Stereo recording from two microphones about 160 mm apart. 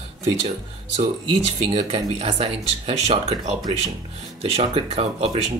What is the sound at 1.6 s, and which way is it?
Speech, 40° right (ahead or behind).